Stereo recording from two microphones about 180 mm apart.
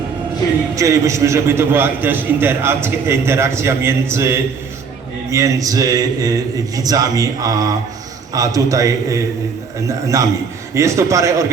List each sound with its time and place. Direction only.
0.8 s a man's voice: 15° right (ahead or behind)